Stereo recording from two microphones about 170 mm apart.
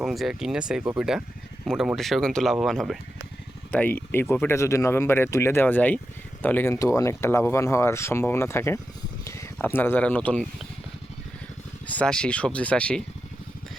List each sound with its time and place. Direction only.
0.0 s speech: centre (ahead or behind)
11.9 s speech: 5° left (ahead or behind)